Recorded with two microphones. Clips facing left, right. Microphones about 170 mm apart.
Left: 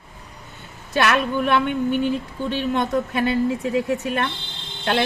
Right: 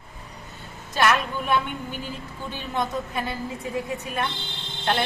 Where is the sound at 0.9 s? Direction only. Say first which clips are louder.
Left 3 dB; 70° left (ahead or behind).